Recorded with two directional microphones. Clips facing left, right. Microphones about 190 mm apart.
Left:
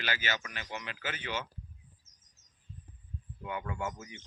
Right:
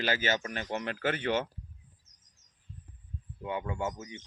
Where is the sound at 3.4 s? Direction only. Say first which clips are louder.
Right 4 dB; 25° right (ahead or behind).